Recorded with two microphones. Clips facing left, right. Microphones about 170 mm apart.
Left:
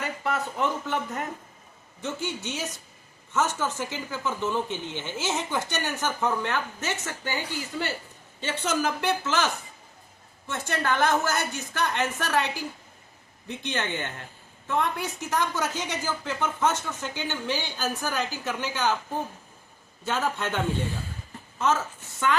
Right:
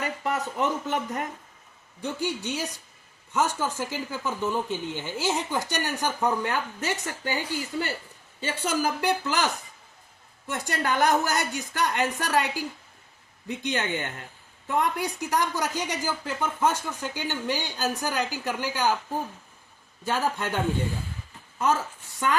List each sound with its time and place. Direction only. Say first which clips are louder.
0.0 s speech: right 1 dB; 15° right (ahead or behind)
2.0 s a woman's voice: right 2 dB; 10° right (ahead or behind)
20.1 s a woman's voice: right 1 dB; 10° right (ahead or behind)